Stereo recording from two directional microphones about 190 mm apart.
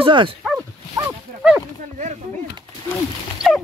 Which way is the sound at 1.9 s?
40° right (ahead or behind).